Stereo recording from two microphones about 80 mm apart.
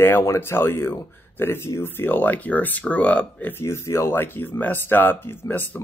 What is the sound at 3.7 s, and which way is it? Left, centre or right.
A man's voice, left.